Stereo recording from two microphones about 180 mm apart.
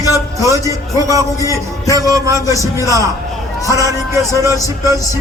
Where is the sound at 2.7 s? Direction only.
15° left (ahead or behind).